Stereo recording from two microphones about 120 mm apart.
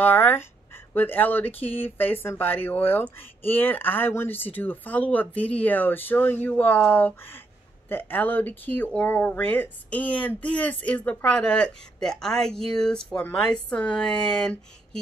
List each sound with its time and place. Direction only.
0.0 s speech: 15° left (ahead or behind)